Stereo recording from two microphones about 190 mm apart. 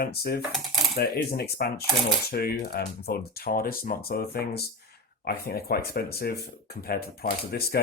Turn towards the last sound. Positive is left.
turn(degrees=55)  # may be behind; listen again after turning